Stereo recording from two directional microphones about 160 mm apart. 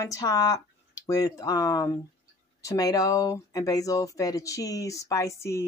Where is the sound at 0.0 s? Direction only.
20° left (ahead or behind).